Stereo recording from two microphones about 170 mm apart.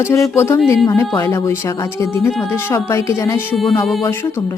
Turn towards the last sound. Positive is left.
turn(degrees=0)  # may be behind; listen again after turning